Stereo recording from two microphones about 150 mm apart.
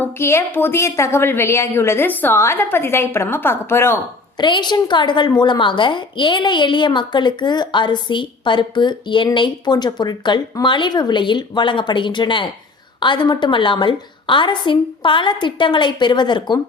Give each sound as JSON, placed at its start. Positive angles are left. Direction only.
{"t": 0.0, "sound": "a woman's voice", "side_deg": 15}
{"t": 4.4, "sound": "a woman's voice", "side_deg": 30}